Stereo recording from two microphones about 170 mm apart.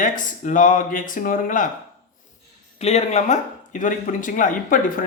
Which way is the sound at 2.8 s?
40° left (ahead or behind).